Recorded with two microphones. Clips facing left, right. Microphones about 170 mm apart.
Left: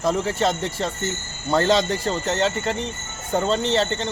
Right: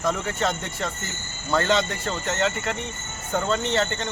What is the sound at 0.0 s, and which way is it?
Speech, 30° left (ahead or behind).